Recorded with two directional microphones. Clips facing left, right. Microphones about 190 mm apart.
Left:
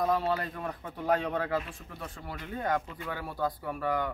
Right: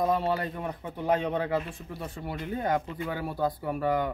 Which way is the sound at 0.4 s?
20° right (ahead or behind).